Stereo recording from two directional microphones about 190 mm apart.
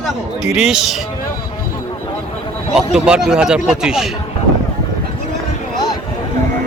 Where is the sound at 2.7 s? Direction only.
5° right (ahead or behind).